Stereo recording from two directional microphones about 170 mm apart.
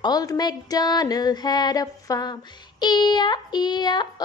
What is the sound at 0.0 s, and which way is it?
Female singing, 20° left (ahead or behind).